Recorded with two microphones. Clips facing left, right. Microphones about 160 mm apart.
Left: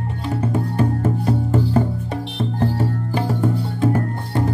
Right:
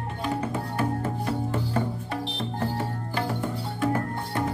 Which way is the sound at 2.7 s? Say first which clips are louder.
Left 7 dB; 20° left (ahead or behind).